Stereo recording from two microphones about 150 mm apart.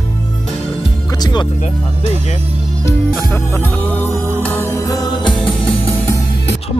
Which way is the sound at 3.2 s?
10° left (ahead or behind).